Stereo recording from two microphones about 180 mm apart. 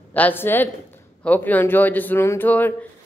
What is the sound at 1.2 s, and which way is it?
A woman's voice, 10° left (ahead or behind).